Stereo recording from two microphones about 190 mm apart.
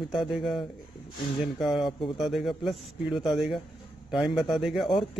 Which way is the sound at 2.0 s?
Centre (ahead or behind).